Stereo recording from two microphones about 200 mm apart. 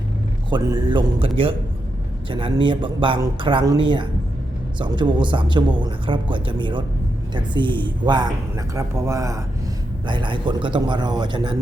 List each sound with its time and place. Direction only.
0.5 s speech: 25° right (ahead or behind)